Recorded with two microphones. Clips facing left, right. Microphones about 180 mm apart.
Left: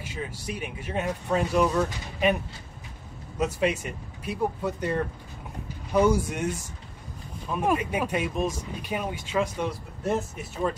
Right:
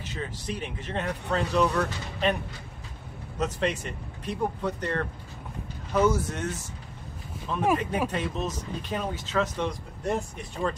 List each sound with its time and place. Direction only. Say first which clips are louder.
0.0 s speech: even; 10° left (ahead or behind)
3.3 s speech: left 2 dB; 10° left (ahead or behind)
7.7 s speech: even; 10° left (ahead or behind)